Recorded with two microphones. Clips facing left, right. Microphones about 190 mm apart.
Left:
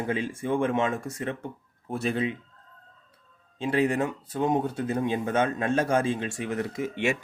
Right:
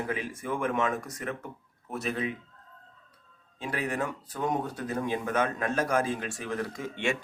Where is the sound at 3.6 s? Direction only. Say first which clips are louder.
Left 7 dB; 25° left (ahead or behind).